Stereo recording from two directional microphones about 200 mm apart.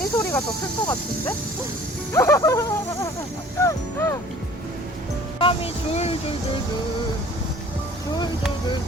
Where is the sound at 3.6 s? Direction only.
15° left (ahead or behind).